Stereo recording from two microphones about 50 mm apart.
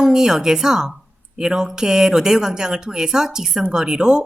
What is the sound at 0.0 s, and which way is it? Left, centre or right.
Speech, centre.